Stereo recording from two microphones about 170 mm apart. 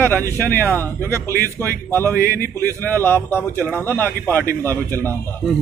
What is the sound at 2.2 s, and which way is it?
Speech, 60° left (ahead or behind).